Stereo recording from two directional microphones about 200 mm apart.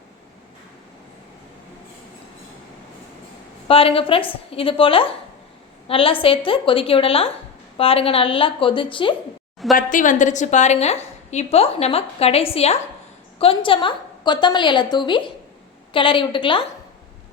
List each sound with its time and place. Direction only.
3.7 s a woman's voice: 30° left (ahead or behind)
9.7 s a woman's voice: 40° left (ahead or behind); by 16.6 s 25° left (ahead or behind)